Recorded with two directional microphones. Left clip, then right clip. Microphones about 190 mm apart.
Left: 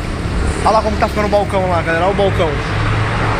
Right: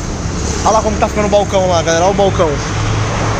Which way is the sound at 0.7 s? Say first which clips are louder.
Right 1 dB; 40° right (ahead or behind).